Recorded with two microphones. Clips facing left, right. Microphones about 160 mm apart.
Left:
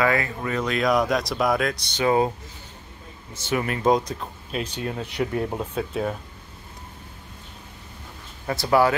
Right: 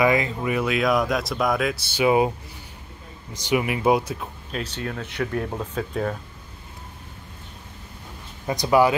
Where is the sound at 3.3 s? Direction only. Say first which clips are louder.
Right 3 dB; 15° right (ahead or behind).